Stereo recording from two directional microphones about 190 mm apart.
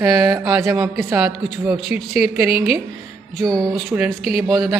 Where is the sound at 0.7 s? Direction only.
5° right (ahead or behind).